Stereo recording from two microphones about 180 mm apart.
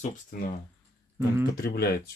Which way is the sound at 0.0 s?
45° left (ahead or behind).